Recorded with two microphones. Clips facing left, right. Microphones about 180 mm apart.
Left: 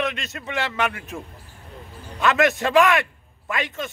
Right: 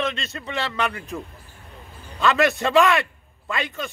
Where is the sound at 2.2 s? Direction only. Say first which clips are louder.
Even; 20° left (ahead or behind).